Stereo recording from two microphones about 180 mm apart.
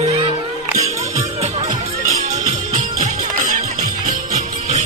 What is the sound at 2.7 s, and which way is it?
Music, 45° right (ahead or behind).